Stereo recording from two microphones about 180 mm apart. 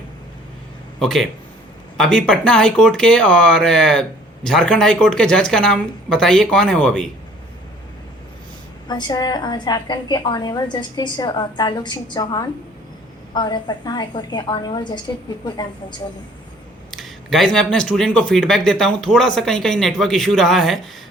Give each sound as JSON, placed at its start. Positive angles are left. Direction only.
{"t": 0.9, "sound": "speech", "side_deg": 0}
{"t": 8.9, "sound": "a woman's voice", "side_deg": 25}
{"t": 16.9, "sound": "speech", "side_deg": 0}